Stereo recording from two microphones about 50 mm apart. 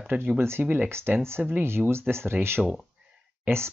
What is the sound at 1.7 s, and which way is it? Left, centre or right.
Speech, right.